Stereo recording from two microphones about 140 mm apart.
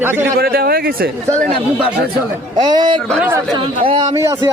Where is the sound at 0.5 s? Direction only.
90° right.